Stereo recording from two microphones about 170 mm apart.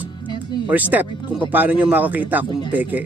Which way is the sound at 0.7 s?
10° right (ahead or behind).